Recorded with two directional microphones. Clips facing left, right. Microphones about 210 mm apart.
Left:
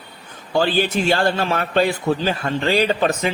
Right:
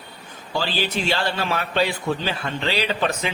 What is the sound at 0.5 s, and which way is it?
A man's voice, 50° left (ahead or behind).